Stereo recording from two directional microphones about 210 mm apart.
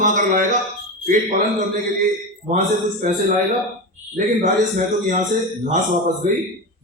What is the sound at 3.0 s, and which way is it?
Speech, 35° right (ahead or behind).